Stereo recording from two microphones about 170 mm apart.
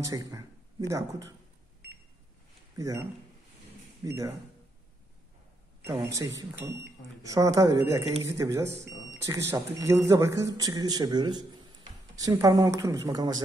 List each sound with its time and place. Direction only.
0.0 s speech: 20° right (ahead or behind)
2.8 s speech: 15° right (ahead or behind)
5.9 s speech: 20° right (ahead or behind)